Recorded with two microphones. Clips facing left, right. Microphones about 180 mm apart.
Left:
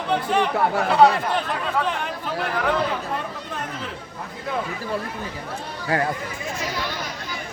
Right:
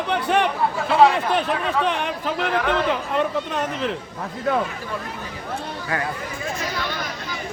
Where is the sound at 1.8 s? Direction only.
75° right (ahead or behind).